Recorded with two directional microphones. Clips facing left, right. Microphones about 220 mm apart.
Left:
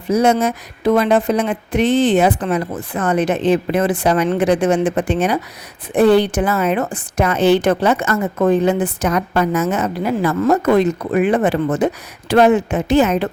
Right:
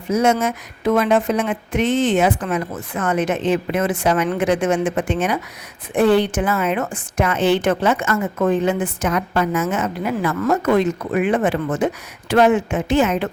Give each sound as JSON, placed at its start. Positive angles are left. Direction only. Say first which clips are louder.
{"t": 0.1, "sound": "a woman's voice", "louder": "left 3 dB", "side_deg": 35}